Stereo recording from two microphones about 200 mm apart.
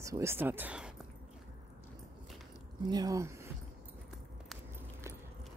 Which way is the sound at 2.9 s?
20° right (ahead or behind).